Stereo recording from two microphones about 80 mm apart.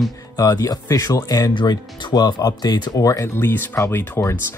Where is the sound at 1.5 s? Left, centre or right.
Left.